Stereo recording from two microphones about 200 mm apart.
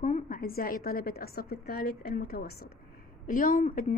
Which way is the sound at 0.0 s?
45° left (ahead or behind).